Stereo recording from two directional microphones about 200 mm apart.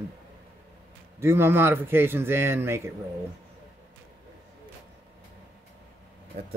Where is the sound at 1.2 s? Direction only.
10° right (ahead or behind).